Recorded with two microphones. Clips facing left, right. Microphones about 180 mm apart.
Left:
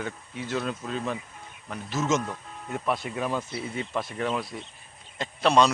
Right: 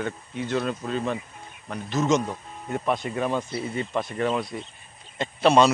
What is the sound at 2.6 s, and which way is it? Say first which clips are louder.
Speech: right 3 dB; centre (ahead or behind).